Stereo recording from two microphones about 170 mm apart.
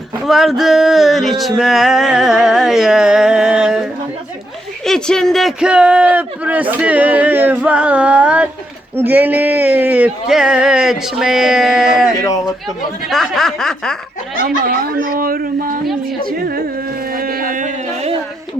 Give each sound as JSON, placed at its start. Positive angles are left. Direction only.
{"t": 0.3, "sound": "a sound", "side_deg": 0}
{"t": 4.9, "sound": "speech", "side_deg": 5}
{"t": 12.2, "sound": "speech", "side_deg": 20}
{"t": 12.6, "sound": "speech", "side_deg": 0}
{"t": 15.0, "sound": "speech", "side_deg": -60}
{"t": 16.2, "sound": "a sound", "side_deg": -60}